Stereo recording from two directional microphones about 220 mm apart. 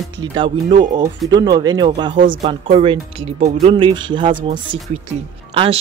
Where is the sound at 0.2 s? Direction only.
20° right (ahead or behind).